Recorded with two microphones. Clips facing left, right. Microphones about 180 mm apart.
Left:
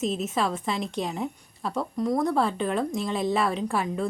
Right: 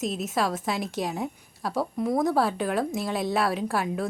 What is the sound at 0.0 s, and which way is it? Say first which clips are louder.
A woman's voice: left 1 dB; centre (ahead or behind).